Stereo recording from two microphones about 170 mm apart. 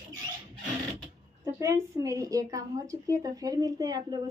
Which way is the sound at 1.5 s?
15° right (ahead or behind).